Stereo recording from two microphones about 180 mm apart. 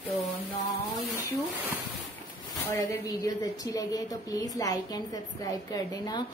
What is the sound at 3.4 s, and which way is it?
A woman's voice, 20° left (ahead or behind).